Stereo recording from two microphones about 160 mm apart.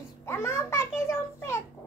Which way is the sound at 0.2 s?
15° left (ahead or behind).